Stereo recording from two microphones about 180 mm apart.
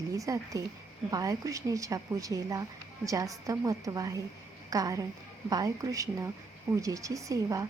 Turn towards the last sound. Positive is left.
turn(degrees=-20)  # may be behind; listen again after turning